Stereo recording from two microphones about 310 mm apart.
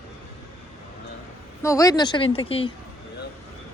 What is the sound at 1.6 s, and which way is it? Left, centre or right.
Speech, centre.